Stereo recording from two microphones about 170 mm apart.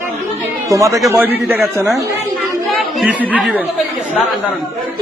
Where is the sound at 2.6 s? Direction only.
5° right (ahead or behind).